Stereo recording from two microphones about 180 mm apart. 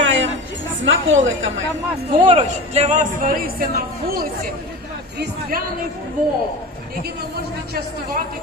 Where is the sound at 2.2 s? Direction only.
40° right (ahead or behind).